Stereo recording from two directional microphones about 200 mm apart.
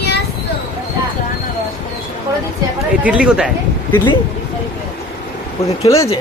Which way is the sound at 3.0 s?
5° right (ahead or behind).